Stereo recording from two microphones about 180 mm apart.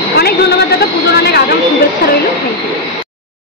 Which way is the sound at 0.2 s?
60° left (ahead or behind).